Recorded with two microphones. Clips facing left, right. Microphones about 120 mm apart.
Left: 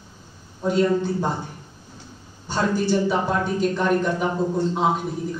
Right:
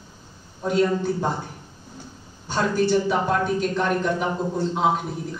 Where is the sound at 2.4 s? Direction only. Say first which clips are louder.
Right 1 dB; centre (ahead or behind).